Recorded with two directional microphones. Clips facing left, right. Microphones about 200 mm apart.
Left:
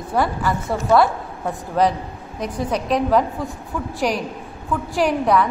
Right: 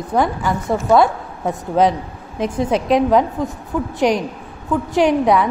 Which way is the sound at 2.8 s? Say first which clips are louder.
Right 3 dB; centre (ahead or behind).